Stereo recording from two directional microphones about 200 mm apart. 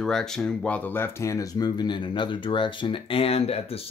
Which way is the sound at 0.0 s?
Centre (ahead or behind).